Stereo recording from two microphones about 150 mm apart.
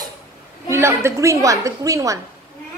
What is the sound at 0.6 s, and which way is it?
A woman's voice, 20° right (ahead or behind).